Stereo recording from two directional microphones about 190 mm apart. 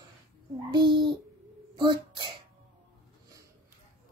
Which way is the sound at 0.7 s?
25° right (ahead or behind).